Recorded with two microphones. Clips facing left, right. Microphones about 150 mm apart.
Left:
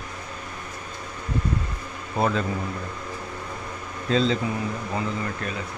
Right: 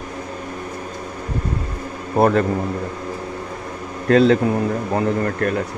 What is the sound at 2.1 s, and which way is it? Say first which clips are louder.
Speech: right 8 dB; 60° right (ahead or behind).